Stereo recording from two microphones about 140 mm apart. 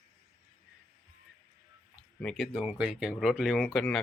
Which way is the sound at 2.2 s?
Centre (ahead or behind).